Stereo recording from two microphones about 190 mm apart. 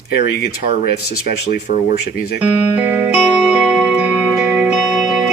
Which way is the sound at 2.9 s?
10° right (ahead or behind).